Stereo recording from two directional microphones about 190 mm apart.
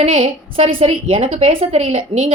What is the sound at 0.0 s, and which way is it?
A woman's voice, 30° right (ahead or behind).